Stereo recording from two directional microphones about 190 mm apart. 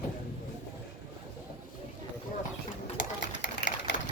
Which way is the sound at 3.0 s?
70° left (ahead or behind).